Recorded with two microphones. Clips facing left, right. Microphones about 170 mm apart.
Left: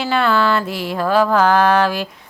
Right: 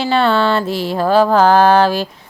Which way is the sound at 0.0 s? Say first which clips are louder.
Right 3 dB; 30° right (ahead or behind).